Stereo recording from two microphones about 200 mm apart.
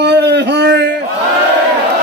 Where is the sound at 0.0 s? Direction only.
55° right (ahead or behind).